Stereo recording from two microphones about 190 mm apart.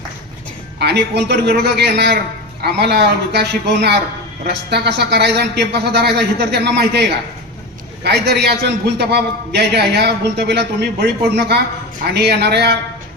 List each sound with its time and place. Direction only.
0.8 s a man's voice: 60° right (ahead or behind)
8.0 s a man's voice: 60° right (ahead or behind)